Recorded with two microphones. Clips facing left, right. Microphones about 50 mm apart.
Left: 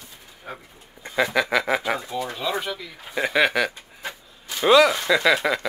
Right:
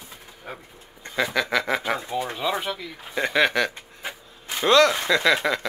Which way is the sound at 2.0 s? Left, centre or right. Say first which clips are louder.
Right 1 dB; centre.